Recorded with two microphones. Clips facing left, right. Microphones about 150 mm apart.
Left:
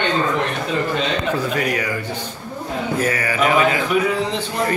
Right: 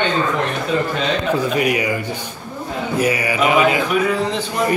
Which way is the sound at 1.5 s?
15° right (ahead or behind).